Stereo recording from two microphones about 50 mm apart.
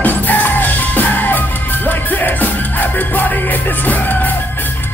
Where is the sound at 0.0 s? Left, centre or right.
Left.